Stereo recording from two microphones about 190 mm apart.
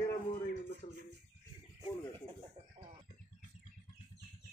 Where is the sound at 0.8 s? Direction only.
35° left (ahead or behind).